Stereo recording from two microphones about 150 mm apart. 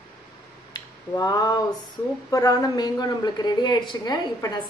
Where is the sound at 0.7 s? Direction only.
25° left (ahead or behind).